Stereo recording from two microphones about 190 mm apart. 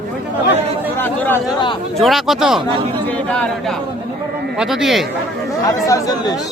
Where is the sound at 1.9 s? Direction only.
Centre (ahead or behind).